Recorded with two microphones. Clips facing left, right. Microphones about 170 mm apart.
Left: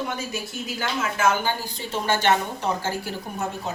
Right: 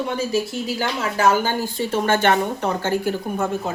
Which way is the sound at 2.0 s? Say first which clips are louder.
Right 3 dB; 50° right (ahead or behind).